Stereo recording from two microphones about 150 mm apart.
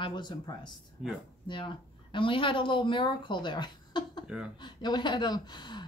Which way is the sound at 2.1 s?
35° left (ahead or behind).